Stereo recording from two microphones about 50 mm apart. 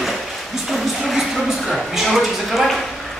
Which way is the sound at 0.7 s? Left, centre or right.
Centre.